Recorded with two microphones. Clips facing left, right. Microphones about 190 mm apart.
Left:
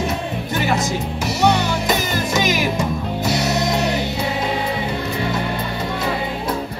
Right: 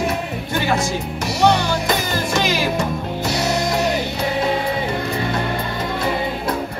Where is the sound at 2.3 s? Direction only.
15° left (ahead or behind).